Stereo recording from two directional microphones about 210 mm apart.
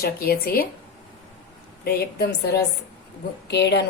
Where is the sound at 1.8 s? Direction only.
50° left (ahead or behind).